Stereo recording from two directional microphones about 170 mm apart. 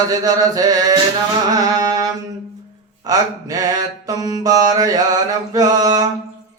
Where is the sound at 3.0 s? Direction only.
20° right (ahead or behind).